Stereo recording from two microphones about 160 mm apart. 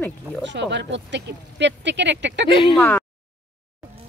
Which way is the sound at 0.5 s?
90° right.